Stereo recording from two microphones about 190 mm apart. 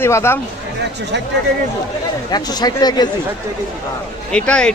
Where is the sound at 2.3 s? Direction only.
20° left (ahead or behind).